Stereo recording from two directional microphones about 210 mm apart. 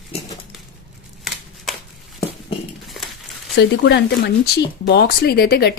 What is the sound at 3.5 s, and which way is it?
Speech, 55° left (ahead or behind).